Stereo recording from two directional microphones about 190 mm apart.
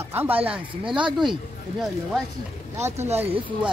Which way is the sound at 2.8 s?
35° right (ahead or behind).